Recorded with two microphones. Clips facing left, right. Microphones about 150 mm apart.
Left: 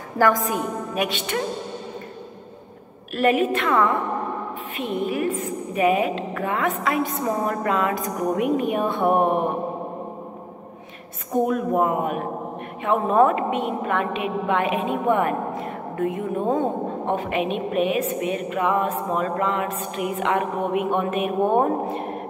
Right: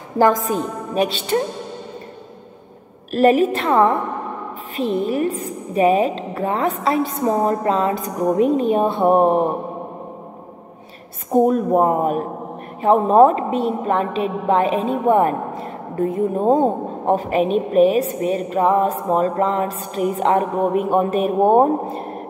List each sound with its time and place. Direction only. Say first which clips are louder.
0.2 s a woman's voice: right 4 dB; 25° right (ahead or behind)
3.1 s a woman's voice: right 5 dB; 40° right (ahead or behind)
11.3 s a woman's voice: right 5 dB; 35° right (ahead or behind)